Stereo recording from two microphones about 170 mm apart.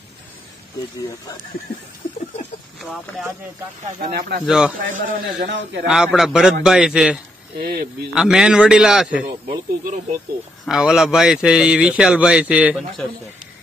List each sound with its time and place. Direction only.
2.8 s a man's voice: centre (ahead or behind)
4.0 s speech: 65° right (ahead or behind)
4.5 s a man's voice: 5° right (ahead or behind)
4.7 s a man's voice: 55° right (ahead or behind)
5.5 s speech: 90° right
5.9 s a man's voice: centre (ahead or behind)
7.5 s speech: 65° right (ahead or behind)
8.1 s a man's voice: 5° right (ahead or behind)
10.6 s a man's voice: 5° right (ahead or behind)